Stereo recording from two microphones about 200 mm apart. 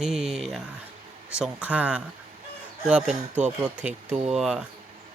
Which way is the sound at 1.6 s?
5° right (ahead or behind).